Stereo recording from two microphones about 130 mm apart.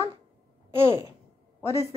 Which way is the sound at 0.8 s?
40° right (ahead or behind).